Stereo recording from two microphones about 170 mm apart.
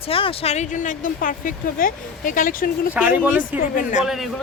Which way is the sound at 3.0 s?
5° right (ahead or behind).